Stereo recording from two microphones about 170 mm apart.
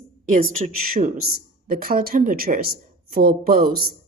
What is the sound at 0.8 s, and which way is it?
Speech, 55° right (ahead or behind).